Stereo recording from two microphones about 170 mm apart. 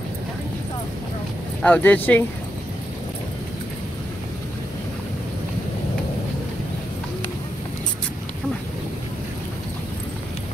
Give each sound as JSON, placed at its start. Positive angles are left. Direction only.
{"t": 1.6, "sound": "speech", "side_deg": 10}